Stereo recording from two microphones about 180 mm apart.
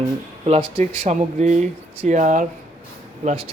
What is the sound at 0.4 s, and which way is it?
Speech, 35° right (ahead or behind).